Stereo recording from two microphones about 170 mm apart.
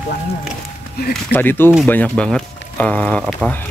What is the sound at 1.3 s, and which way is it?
Speech, 15° left (ahead or behind).